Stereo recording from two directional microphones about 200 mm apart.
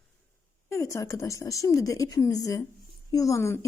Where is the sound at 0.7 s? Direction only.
15° left (ahead or behind).